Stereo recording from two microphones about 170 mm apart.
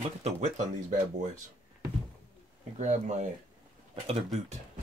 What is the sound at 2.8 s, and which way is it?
Speech, 45° right (ahead or behind).